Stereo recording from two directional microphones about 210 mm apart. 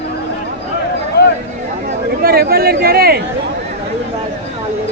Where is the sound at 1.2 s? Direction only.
50° left (ahead or behind).